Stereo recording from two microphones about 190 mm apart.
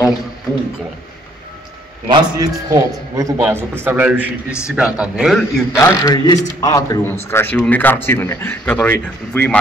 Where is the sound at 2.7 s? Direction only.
15° right (ahead or behind); by 5.6 s centre (ahead or behind).